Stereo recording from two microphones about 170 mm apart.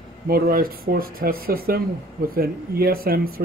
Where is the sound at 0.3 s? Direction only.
60° right (ahead or behind).